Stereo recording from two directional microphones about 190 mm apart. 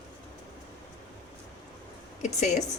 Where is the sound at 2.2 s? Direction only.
35° left (ahead or behind).